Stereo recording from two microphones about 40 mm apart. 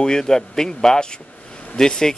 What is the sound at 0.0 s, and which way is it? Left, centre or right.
A man's voice, centre.